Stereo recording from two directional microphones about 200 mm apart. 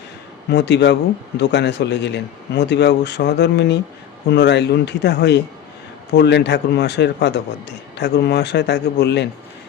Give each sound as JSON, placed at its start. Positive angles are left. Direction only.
{"t": 0.5, "sound": "speech", "side_deg": 60}